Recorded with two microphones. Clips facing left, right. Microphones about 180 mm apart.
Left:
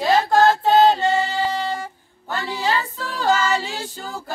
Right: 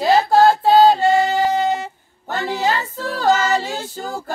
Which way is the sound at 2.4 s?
45° right (ahead or behind).